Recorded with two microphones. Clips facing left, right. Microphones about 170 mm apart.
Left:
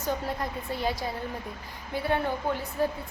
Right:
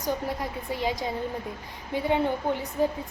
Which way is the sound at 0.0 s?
15° right (ahead or behind).